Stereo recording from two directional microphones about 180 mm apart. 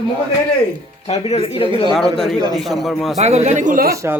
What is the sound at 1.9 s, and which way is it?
Speech, centre (ahead or behind).